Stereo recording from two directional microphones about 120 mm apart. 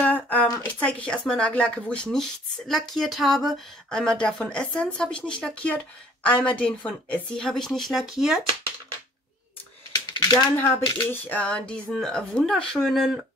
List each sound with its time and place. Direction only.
0.0 s speech: 10° left (ahead or behind); by 8.4 s 5° right (ahead or behind)
9.9 s typing: 35° left (ahead or behind)
11.1 s speech: 15° left (ahead or behind)